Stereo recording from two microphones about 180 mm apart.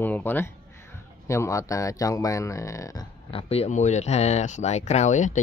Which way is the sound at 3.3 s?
30° left (ahead or behind).